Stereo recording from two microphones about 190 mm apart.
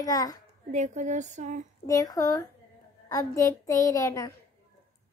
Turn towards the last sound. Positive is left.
turn(degrees=15)  # may be behind; listen again after turning